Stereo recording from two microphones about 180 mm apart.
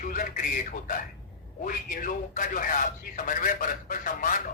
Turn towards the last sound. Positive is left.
turn(degrees=50)  # may be behind; listen again after turning